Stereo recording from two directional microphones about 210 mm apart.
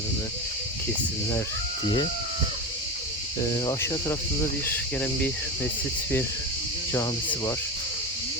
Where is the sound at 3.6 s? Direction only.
15° left (ahead or behind).